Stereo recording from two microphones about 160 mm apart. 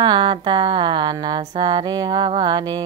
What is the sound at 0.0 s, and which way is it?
Speech, 30° right (ahead or behind).